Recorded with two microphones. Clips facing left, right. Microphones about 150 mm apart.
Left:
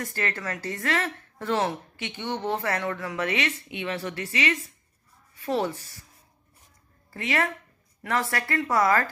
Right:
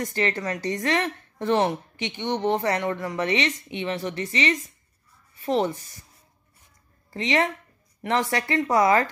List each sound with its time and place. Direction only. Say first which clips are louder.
0.0 s a woman's voice: right 5 dB; 15° right (ahead or behind)
7.1 s speech: right 4 dB; 20° right (ahead or behind)